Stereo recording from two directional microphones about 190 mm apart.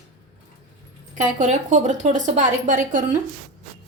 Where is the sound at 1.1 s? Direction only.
40° right (ahead or behind).